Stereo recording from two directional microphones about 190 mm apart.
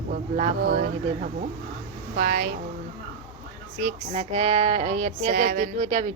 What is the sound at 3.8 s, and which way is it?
Speech, 35° right (ahead or behind).